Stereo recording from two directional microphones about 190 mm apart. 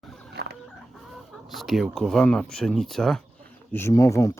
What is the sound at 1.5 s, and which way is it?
Speech, centre (ahead or behind).